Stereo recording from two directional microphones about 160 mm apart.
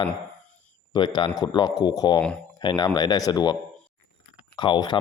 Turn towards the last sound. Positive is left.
turn(degrees=30)  # may be behind; listen again after turning